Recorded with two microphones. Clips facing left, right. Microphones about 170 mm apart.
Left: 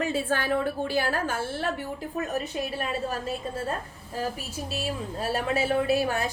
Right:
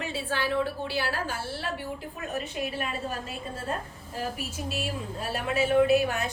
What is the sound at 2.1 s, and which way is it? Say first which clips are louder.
Speech: left 5 dB; 40° left (ahead or behind).